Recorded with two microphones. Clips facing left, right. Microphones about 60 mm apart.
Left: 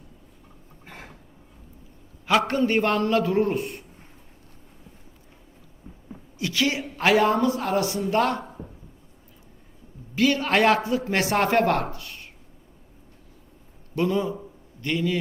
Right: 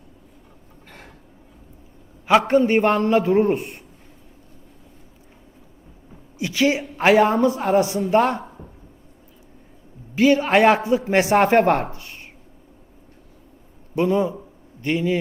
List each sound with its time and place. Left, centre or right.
2.2 s a man's voice: centre
6.4 s a man's voice: right
10.2 s a man's voice: right
13.9 s a man's voice: right